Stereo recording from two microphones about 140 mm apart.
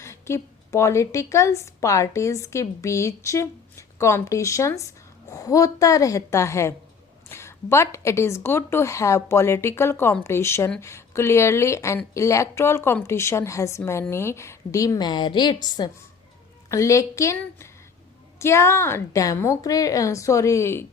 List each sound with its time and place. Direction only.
0.0 s a woman's voice: 20° left (ahead or behind)